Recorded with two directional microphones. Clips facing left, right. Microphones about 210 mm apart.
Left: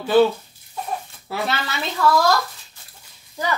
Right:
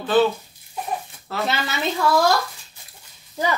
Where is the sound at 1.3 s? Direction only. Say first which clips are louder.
Even; 10° left (ahead or behind).